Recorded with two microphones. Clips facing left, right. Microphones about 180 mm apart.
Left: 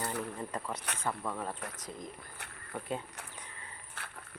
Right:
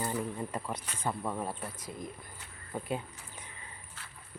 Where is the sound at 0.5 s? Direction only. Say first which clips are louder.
Right 1 dB; 10° right (ahead or behind).